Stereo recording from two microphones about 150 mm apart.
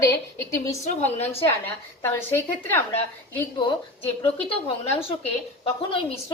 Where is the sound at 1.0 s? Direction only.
15° left (ahead or behind).